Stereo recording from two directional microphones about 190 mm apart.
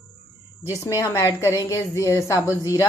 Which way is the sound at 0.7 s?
15° left (ahead or behind).